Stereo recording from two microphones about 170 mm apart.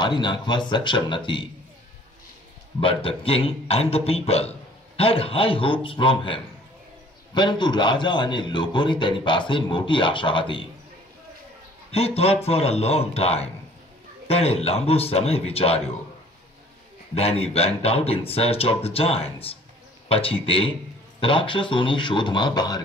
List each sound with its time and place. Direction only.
0.0 s a man's voice: 25° left (ahead or behind)
2.8 s a man's voice: 30° left (ahead or behind)
12.4 s a man's voice: 35° left (ahead or behind)
17.1 s a man's voice: 35° left (ahead or behind)